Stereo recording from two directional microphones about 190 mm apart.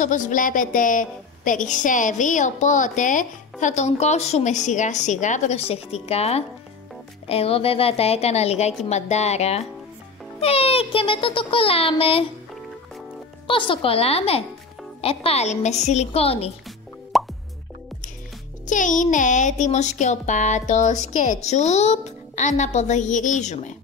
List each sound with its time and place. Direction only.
0.0 s a woman's voice: 40° left (ahead or behind)
13.5 s a woman's voice: 25° left (ahead or behind)
17.1 s plop: centre (ahead or behind)
18.7 s a woman's voice: 40° left (ahead or behind)